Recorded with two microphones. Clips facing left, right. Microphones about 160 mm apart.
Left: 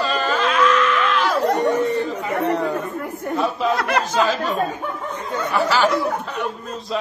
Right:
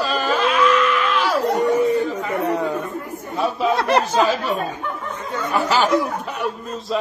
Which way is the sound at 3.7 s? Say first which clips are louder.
Right 2 dB; 30° right (ahead or behind).